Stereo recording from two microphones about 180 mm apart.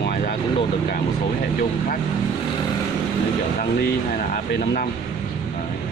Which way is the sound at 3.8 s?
65° left (ahead or behind).